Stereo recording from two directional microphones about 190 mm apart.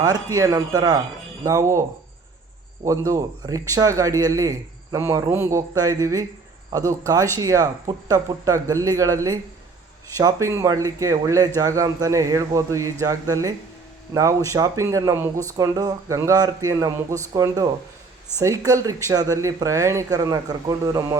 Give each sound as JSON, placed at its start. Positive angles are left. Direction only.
{"t": 0.0, "sound": "speech", "side_deg": -15}
{"t": 2.8, "sound": "speech", "side_deg": -15}